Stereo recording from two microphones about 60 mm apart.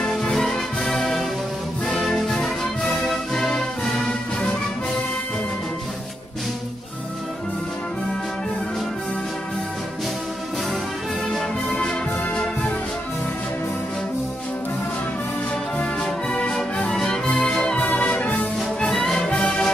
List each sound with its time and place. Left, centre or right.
0.0 s music: centre
15.8 s music: centre
17.8 s music: left
18.8 s music: centre